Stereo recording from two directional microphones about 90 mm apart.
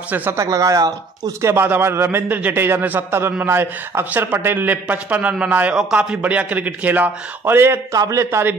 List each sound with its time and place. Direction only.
0.1 s a man's voice: 20° right (ahead or behind)
0.4 s speech: 40° right (ahead or behind)
1.5 s a man's voice: 25° right (ahead or behind)
7.9 s speech: 40° right (ahead or behind)